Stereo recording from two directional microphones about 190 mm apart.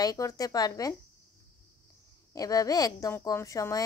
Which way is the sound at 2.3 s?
20° left (ahead or behind).